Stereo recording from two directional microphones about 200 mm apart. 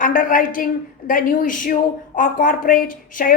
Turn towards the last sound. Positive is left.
turn(degrees=45)  # may be behind; listen again after turning